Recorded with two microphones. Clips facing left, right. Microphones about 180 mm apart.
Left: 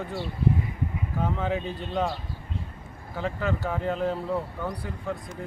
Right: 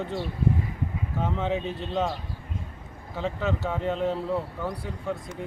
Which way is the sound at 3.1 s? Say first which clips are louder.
Right 1 dB; centre (ahead or behind).